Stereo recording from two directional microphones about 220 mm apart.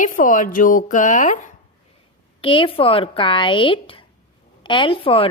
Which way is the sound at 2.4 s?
25° left (ahead or behind).